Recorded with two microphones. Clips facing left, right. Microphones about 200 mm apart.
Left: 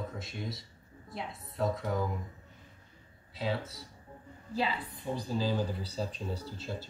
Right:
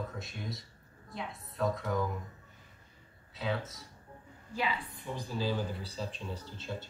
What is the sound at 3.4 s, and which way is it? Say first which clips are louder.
Speech: left 1 dB; 30° left (ahead or behind).